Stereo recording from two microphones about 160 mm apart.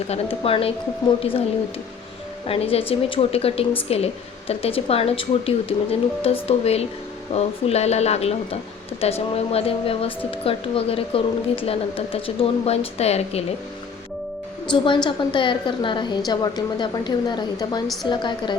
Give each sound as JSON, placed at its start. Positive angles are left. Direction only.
{"t": 0.1, "sound": "speech", "side_deg": 35}
{"t": 2.5, "sound": "speech", "side_deg": 35}
{"t": 14.7, "sound": "a woman's voice", "side_deg": 25}